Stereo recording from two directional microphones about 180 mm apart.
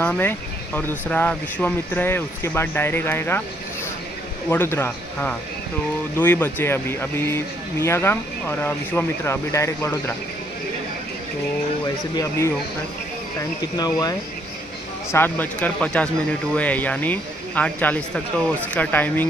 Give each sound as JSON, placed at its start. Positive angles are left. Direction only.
{"t": 0.0, "sound": "speech", "side_deg": 10}
{"t": 4.5, "sound": "speech", "side_deg": 10}
{"t": 12.2, "sound": "speech", "side_deg": 15}